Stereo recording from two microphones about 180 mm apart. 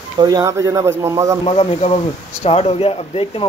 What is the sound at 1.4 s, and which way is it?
Speech, 30° left (ahead or behind).